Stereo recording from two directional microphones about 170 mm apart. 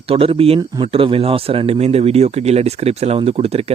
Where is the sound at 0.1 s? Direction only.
35° right (ahead or behind).